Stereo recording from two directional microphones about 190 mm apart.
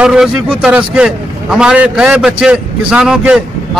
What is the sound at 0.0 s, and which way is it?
A man's voice, 5° right (ahead or behind).